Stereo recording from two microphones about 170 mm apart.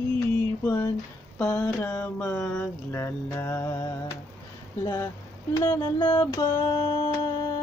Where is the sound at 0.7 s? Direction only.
10° left (ahead or behind).